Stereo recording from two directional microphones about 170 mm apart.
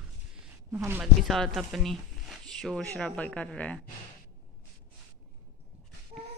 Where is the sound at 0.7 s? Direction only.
15° right (ahead or behind).